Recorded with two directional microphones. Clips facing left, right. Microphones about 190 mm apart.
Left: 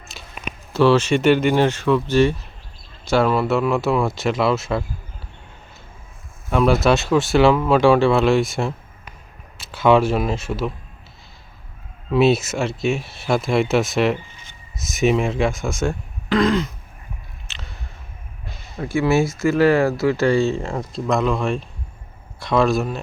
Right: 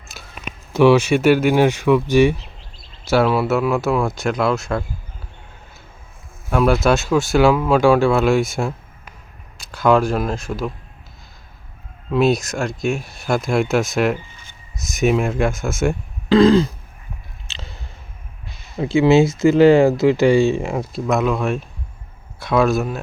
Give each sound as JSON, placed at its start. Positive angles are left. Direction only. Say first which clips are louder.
{"t": 0.7, "sound": "speech", "louder": "right 2 dB", "side_deg": -15}
{"t": 6.5, "sound": "speech", "louder": "even", "side_deg": 0}
{"t": 9.7, "sound": "speech", "louder": "even", "side_deg": 5}
{"t": 12.1, "sound": "speech", "louder": "left 1 dB", "side_deg": 5}
{"t": 16.3, "sound": "throat clearing", "louder": "right 6 dB", "side_deg": -30}
{"t": 17.5, "sound": "chewing", "louder": "right 3 dB", "side_deg": -25}
{"t": 18.8, "sound": "speech", "louder": "right 5 dB", "side_deg": -20}